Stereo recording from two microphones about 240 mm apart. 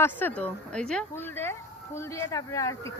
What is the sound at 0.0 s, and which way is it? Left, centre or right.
A man's voice, centre.